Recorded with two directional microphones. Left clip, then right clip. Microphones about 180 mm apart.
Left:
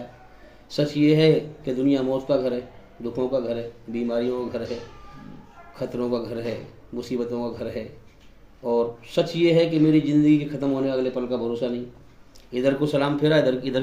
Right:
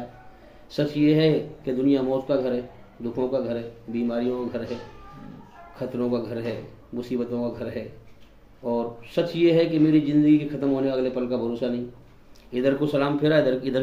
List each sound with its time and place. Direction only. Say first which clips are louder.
0.7 s speech: left 2 dB; 15° left (ahead or behind)
5.8 s speech: left 1 dB; 15° left (ahead or behind)